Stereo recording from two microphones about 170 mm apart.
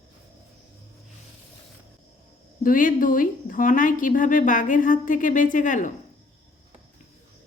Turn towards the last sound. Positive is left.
turn(degrees=50)  # may be behind; listen again after turning